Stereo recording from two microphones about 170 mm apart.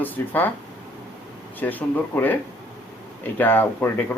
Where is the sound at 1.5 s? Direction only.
10° left (ahead or behind).